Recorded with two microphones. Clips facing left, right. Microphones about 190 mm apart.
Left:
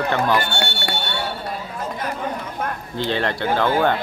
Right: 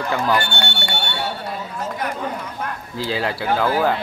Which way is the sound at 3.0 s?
5° right (ahead or behind).